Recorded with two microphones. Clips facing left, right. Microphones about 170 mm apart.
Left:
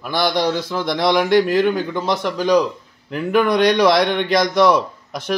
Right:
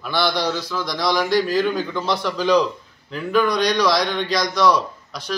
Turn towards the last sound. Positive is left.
turn(degrees=50)  # may be behind; listen again after turning